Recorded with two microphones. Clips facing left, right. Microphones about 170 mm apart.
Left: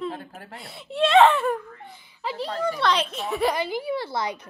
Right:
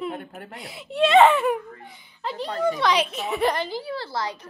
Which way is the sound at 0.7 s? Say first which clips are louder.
Right 1 dB; centre (ahead or behind).